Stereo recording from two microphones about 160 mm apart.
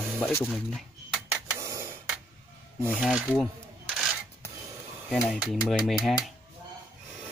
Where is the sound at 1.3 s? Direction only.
20° right (ahead or behind).